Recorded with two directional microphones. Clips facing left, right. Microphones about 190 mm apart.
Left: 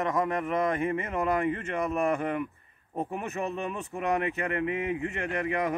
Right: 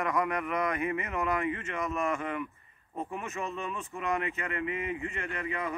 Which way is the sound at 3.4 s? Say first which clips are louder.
Left 4 dB; 65° left (ahead or behind).